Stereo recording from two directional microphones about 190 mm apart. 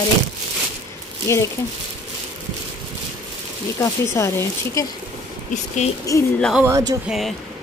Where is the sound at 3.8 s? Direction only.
15° left (ahead or behind).